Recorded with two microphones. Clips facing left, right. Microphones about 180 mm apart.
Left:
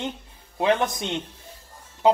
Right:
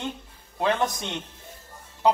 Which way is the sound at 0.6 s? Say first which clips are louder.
Left 3 dB; 20° left (ahead or behind).